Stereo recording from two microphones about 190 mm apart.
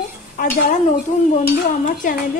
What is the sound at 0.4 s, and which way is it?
Speech, 50° left (ahead or behind).